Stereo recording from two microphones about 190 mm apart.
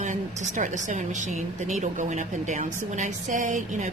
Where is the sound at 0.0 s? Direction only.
40° right (ahead or behind).